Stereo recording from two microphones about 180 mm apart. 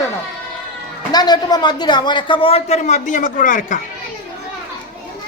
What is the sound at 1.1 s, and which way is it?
A man's voice, 20° left (ahead or behind).